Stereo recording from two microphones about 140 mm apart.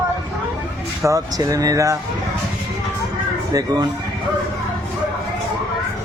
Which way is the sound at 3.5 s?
25° right (ahead or behind).